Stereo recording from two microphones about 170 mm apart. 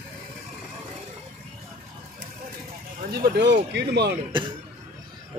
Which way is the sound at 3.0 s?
65° right (ahead or behind).